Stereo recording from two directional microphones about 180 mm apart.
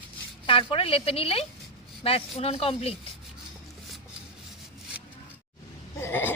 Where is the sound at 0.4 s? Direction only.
30° left (ahead or behind).